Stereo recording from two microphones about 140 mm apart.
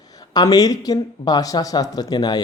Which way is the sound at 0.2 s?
25° left (ahead or behind).